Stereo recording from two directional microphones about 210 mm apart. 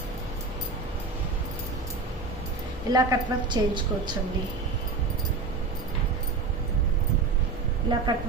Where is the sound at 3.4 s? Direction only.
20° right (ahead or behind).